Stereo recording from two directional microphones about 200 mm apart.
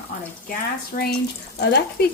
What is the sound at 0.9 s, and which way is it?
Speech, 45° left (ahead or behind).